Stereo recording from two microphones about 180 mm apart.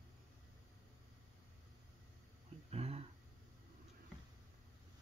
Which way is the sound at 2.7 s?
35° right (ahead or behind).